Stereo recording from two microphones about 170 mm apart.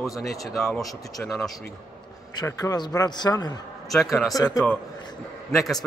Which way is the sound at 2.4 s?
20° left (ahead or behind).